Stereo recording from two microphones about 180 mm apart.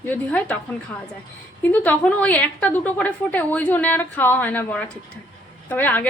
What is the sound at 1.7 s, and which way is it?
A woman's voice, 10° left (ahead or behind).